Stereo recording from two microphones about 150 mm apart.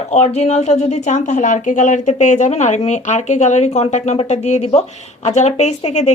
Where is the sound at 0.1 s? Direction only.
45° left (ahead or behind).